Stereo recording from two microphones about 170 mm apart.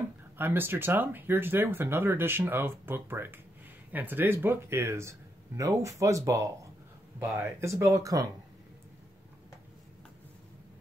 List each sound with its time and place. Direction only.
0.4 s speech: 10° right (ahead or behind)